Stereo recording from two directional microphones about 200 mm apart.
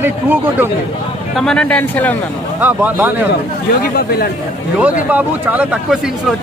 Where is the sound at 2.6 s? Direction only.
10° right (ahead or behind).